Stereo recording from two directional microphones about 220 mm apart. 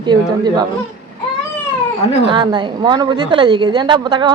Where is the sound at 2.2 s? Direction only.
20° right (ahead or behind).